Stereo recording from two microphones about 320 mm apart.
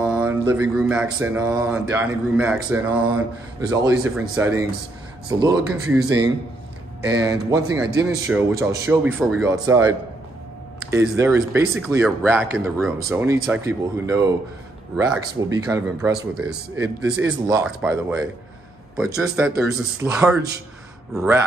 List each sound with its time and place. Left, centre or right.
0.0 s mantra: centre
0.5 s speech: centre
4.4 s a man's voice: centre